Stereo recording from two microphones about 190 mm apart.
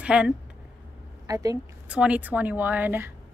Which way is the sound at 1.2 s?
20° right (ahead or behind).